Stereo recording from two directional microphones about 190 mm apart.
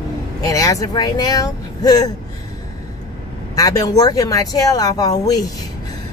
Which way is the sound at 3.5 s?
20° left (ahead or behind).